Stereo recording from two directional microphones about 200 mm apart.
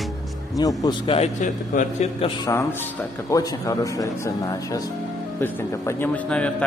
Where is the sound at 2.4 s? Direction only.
15° left (ahead or behind).